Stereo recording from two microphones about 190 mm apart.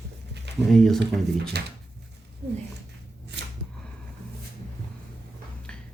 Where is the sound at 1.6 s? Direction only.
60° right (ahead or behind).